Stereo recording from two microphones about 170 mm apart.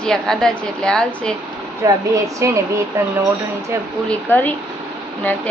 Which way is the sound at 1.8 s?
20° right (ahead or behind).